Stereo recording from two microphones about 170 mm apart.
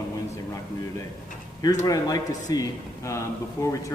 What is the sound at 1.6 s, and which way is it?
A man's voice, 20° left (ahead or behind).